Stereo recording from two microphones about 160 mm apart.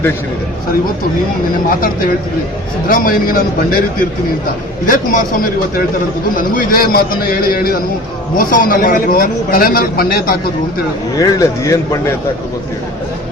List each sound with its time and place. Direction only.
2.9 s a man's voice: 65° left (ahead or behind)
4.9 s a man's voice: 60° left (ahead or behind)
6.3 s a man's voice: 60° left (ahead or behind)
11.2 s speech: 20° left (ahead or behind)